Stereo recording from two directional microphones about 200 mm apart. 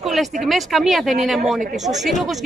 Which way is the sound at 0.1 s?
Centre (ahead or behind).